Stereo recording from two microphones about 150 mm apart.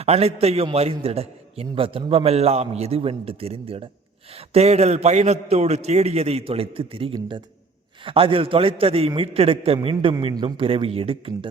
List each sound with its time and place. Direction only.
0.0 s a man's voice: 45° right (ahead or behind)